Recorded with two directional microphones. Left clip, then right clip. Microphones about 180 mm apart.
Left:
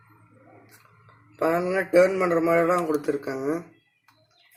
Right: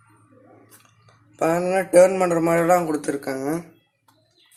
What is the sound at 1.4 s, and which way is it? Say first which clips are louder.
A man's voice: right 3 dB; 35° right (ahead or behind).